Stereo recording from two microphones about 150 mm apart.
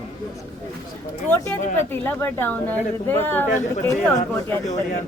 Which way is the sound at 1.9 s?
15° left (ahead or behind).